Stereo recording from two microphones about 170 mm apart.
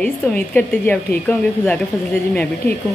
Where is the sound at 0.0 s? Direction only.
10° left (ahead or behind).